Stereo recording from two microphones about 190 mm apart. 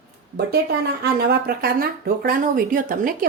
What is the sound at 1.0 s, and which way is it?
Speech, 55° right (ahead or behind).